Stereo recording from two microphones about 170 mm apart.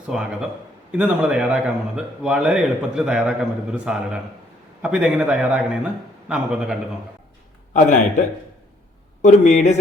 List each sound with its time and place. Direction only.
0.1 s a man's voice: 5° right (ahead or behind)
7.7 s speech: 45° left (ahead or behind)
9.2 s speech: 45° left (ahead or behind)